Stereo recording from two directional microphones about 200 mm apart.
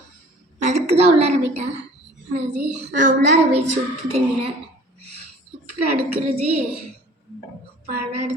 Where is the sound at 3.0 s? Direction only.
40° right (ahead or behind).